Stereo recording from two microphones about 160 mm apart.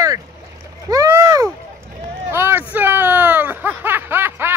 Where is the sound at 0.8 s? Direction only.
20° right (ahead or behind).